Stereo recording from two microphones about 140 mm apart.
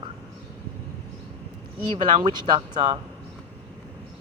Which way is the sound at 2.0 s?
35° right (ahead or behind).